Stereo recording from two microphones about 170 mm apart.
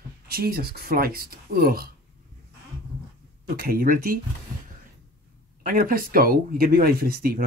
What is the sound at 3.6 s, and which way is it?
Speech, 60° right (ahead or behind).